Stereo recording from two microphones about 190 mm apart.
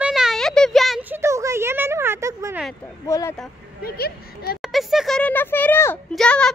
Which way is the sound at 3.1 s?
15° left (ahead or behind).